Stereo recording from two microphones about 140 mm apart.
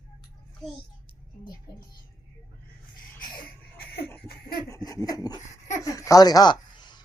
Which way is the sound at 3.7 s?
15° left (ahead or behind).